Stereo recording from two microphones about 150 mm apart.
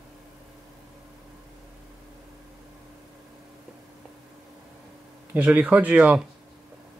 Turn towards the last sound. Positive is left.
turn(degrees=-10)  # may be behind; listen again after turning